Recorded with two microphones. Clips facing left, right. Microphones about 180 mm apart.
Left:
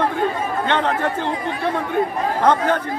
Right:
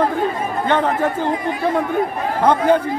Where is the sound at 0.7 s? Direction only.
10° right (ahead or behind).